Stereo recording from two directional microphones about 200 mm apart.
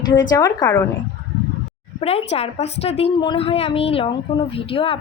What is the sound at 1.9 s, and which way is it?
A woman's voice, 30° left (ahead or behind).